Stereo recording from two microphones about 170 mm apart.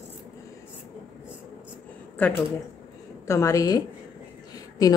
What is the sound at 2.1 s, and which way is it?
A woman's voice, 10° left (ahead or behind).